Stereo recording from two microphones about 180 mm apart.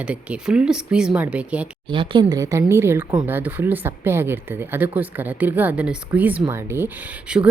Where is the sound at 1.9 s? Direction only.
25° right (ahead or behind).